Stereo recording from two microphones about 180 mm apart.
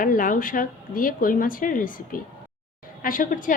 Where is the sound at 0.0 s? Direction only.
50° left (ahead or behind).